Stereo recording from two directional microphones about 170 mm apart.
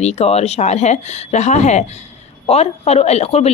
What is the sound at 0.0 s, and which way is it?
A woman's voice, 40° left (ahead or behind).